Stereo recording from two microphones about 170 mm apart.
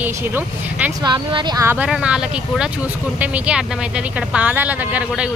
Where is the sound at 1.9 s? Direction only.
5° right (ahead or behind).